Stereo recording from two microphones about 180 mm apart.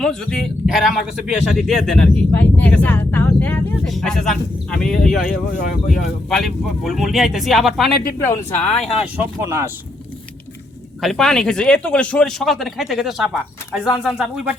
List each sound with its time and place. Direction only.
0.0 s speech: 5° left (ahead or behind)
8.2 s speech: 15° left (ahead or behind)
9.4 s speech: 15° right (ahead or behind)
11.0 s speech: centre (ahead or behind)